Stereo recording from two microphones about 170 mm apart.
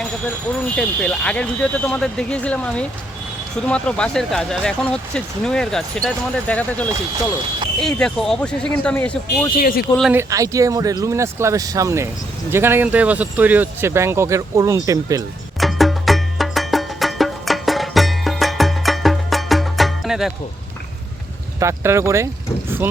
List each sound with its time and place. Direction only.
0.6 s speech: 5° left (ahead or behind)
9.6 s a man's voice: 55° left (ahead or behind)
10.1 s speech: 15° right (ahead or behind)
15.6 s music: centre (ahead or behind)
21.6 s speech: 15° right (ahead or behind)